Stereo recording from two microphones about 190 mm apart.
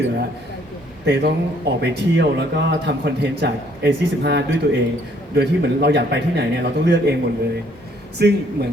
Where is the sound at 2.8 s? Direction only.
65° right (ahead or behind).